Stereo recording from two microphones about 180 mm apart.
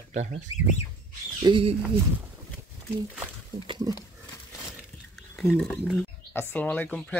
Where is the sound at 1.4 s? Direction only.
25° right (ahead or behind).